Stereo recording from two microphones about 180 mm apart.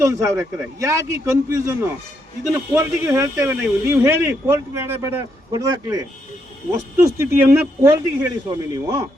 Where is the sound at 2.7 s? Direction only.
15° right (ahead or behind).